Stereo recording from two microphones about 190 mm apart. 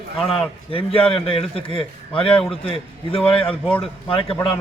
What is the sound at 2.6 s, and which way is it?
A man's voice, 30° left (ahead or behind).